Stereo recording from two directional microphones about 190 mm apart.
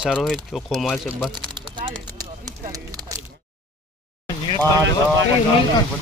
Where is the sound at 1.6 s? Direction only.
25° right (ahead or behind).